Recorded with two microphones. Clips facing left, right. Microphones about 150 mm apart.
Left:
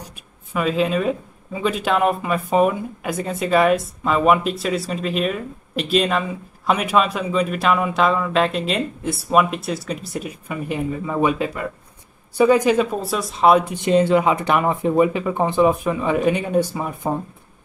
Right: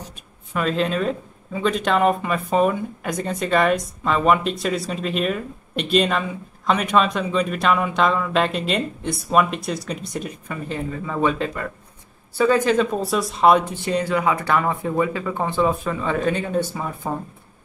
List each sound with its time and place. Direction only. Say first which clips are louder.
0.0 s speech: right 1 dB; 5° left (ahead or behind)
13.7 s speech: left 6 dB; 20° left (ahead or behind)